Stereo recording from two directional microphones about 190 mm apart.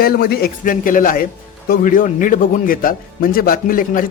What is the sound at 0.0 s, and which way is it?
Speech, 55° left (ahead or behind).